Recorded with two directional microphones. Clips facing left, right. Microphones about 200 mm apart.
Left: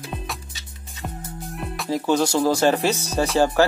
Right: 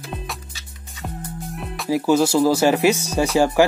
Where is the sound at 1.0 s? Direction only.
Centre (ahead or behind).